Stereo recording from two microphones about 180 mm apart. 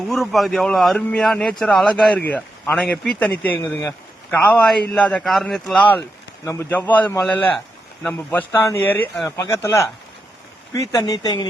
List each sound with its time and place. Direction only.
0.1 s speech: centre (ahead or behind); by 11.4 s 20° left (ahead or behind)